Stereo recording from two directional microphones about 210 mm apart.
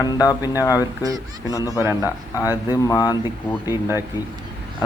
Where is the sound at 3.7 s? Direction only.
10° right (ahead or behind).